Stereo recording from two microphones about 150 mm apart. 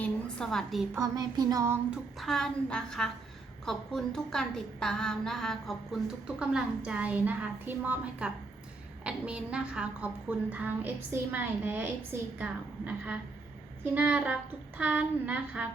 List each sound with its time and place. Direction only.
0.0 s a woman's voice: 5° left (ahead or behind)
0.9 s a sound: 25° right (ahead or behind)
2.1 s a woman's voice: centre (ahead or behind)